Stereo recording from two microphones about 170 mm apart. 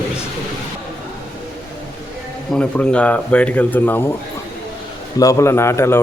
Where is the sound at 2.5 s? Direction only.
5° left (ahead or behind).